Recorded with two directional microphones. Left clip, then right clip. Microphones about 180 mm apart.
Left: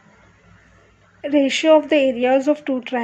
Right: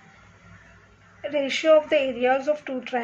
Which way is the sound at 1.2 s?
35° left (ahead or behind).